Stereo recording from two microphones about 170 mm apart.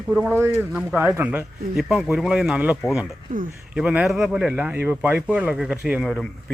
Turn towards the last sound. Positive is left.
turn(degrees=0)  # may be behind; listen again after turning